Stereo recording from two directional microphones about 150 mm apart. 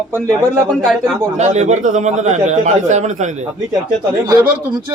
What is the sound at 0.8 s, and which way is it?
Speech, centre (ahead or behind).